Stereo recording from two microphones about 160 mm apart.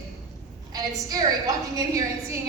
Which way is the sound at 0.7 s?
20° right (ahead or behind).